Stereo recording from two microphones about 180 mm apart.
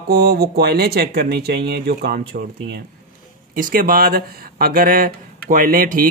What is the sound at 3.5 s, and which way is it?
Speech, 50° right (ahead or behind).